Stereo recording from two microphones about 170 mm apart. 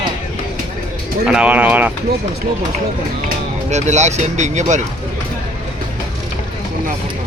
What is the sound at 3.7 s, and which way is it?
Speech, 40° right (ahead or behind).